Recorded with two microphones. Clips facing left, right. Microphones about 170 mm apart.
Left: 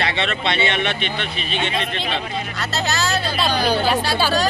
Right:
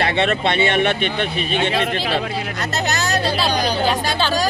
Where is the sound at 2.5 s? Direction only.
20° right (ahead or behind).